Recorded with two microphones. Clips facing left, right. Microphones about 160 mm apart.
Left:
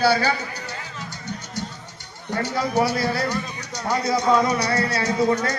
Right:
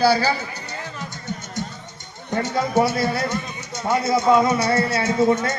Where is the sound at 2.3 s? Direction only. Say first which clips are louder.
Right 2 dB; 20° right (ahead or behind).